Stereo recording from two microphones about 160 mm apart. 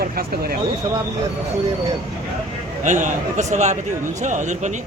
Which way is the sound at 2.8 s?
50° right (ahead or behind).